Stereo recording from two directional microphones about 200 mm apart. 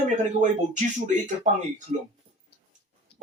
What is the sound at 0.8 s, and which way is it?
Speech, 40° right (ahead or behind).